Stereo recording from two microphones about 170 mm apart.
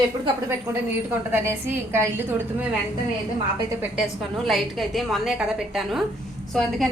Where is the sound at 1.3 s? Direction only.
15° right (ahead or behind).